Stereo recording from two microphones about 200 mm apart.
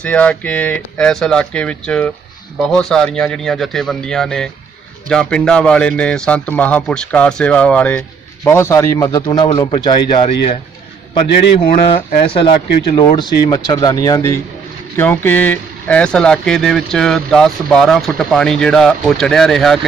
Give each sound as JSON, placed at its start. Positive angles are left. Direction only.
{"t": 0.0, "sound": "speech", "side_deg": 5}
{"t": 12.2, "sound": "speech", "side_deg": 25}